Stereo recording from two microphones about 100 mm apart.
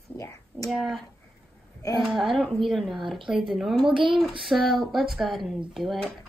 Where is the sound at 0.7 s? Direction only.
Centre (ahead or behind).